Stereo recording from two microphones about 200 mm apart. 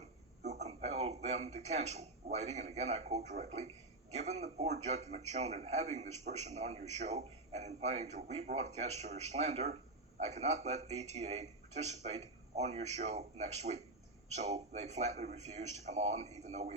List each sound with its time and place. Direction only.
0.4 s a man's voice: 35° right (ahead or behind)